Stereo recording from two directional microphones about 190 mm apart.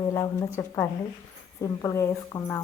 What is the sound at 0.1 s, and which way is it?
Speech, 15° left (ahead or behind).